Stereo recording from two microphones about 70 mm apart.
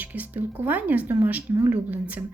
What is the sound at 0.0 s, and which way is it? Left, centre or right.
A woman's voice, right.